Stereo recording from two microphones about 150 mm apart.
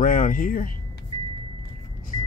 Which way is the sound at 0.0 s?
65° left (ahead or behind).